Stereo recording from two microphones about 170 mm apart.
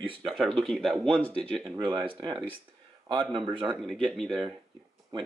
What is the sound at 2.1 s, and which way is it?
A man's voice, 25° right (ahead or behind).